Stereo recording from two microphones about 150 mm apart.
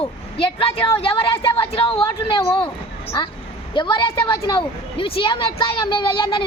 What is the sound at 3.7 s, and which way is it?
A woman's voice, 30° left (ahead or behind).